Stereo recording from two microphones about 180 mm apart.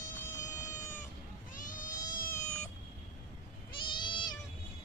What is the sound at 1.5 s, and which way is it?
Vehicle, 50° left (ahead or behind).